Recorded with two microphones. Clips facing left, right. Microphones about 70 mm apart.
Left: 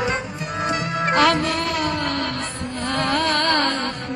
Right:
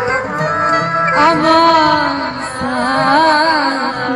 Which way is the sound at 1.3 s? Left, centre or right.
Right.